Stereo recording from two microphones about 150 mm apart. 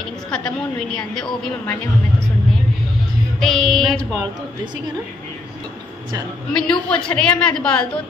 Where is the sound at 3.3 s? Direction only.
Centre (ahead or behind).